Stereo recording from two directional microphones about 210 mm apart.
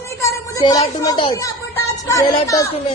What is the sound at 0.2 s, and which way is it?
A woman's voice, 15° left (ahead or behind).